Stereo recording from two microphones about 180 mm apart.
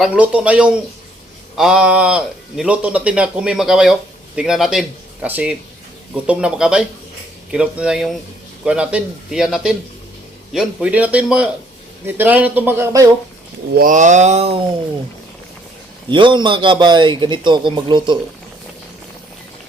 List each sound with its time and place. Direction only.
0.0 s speech: 5° right (ahead or behind)
13.7 s a sound: 45° right (ahead or behind)
16.0 s a man's voice: 25° right (ahead or behind)